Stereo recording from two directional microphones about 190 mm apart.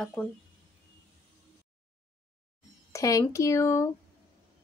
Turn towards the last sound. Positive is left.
turn(degrees=15)  # may be behind; listen again after turning